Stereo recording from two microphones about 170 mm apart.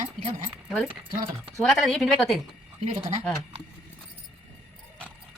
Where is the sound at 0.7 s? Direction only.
Centre (ahead or behind).